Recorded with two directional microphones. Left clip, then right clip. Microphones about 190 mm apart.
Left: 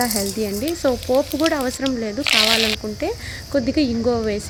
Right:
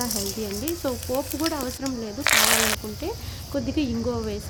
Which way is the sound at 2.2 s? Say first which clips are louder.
Left 3 dB; centre (ahead or behind).